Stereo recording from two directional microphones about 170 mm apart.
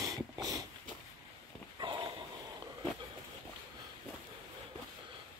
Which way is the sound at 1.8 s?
30° right (ahead or behind).